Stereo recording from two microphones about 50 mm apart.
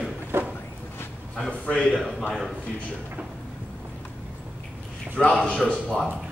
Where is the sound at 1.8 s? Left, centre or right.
Centre.